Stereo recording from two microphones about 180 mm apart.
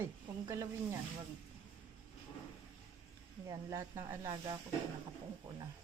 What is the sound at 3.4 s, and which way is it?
Speech, 15° right (ahead or behind).